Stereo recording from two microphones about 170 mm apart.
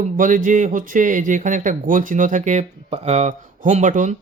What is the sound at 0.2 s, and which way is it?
Speech, 50° right (ahead or behind).